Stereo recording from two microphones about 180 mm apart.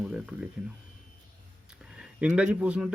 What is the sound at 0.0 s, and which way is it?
Speech, 5° right (ahead or behind).